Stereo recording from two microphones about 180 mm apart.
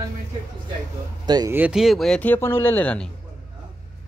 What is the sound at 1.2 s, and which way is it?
Speech, 25° right (ahead or behind).